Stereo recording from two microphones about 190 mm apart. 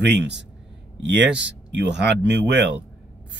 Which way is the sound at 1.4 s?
65° right (ahead or behind).